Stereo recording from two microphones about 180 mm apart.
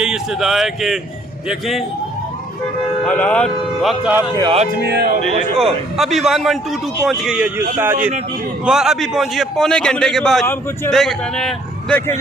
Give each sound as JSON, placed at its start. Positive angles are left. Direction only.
{"t": 0.0, "sound": "a man's voice", "side_deg": -5}
{"t": 3.1, "sound": "a man's voice", "side_deg": 5}
{"t": 4.4, "sound": "music", "side_deg": -25}
{"t": 4.8, "sound": "speech", "side_deg": -60}
{"t": 6.0, "sound": "a man's voice", "side_deg": 0}
{"t": 10.4, "sound": "speech", "side_deg": 15}
{"t": 10.9, "sound": "a man's voice", "side_deg": 0}